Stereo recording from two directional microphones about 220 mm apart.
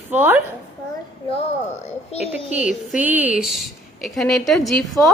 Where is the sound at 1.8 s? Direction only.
30° left (ahead or behind).